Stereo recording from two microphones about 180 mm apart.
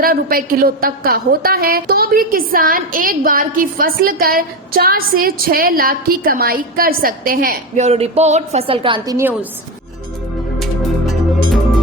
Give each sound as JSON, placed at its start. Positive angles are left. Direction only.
{"t": 0.0, "sound": "a woman's voice", "side_deg": -55}
{"t": 7.9, "sound": "speech", "side_deg": -35}
{"t": 9.1, "sound": "a woman's voice", "side_deg": -10}